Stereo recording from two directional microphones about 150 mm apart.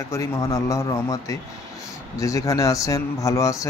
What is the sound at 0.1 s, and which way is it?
Speech, 20° left (ahead or behind).